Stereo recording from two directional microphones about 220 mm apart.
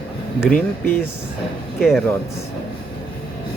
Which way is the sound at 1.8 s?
Centre (ahead or behind).